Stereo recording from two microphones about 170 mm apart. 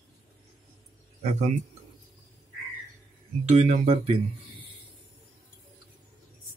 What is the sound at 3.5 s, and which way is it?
Speech, 40° right (ahead or behind).